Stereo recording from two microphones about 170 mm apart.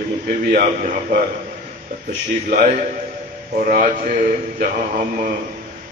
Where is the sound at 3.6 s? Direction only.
55° right (ahead or behind).